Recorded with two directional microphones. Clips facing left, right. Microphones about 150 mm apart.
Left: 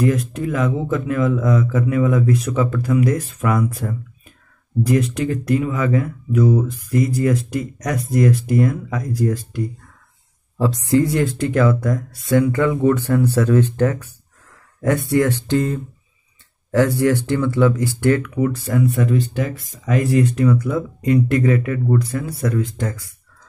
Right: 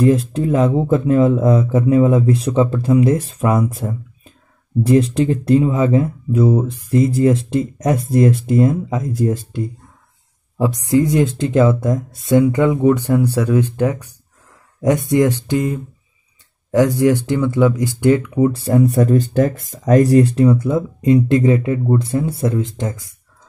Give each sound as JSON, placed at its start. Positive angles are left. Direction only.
{"t": 0.0, "sound": "speech", "side_deg": -30}